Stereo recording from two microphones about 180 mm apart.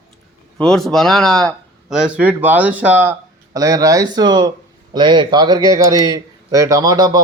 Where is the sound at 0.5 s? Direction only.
5° left (ahead or behind).